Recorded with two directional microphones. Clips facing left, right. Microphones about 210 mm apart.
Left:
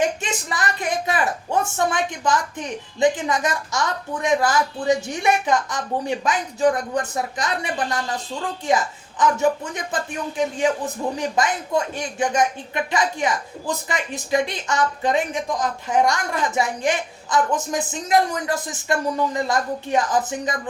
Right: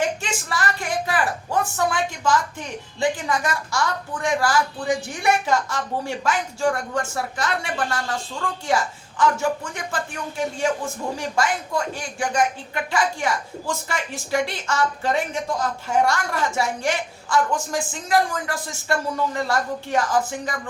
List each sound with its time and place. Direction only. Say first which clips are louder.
0.2 s a woman's voice: even; 20° left (ahead or behind)